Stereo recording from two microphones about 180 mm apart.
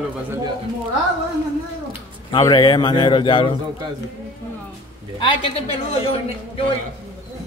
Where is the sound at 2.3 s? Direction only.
25° left (ahead or behind).